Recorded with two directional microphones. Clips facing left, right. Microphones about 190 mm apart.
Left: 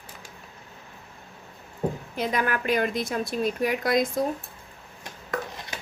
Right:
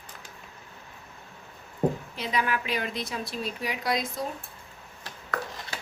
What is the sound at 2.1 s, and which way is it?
A woman's voice, 50° left (ahead or behind).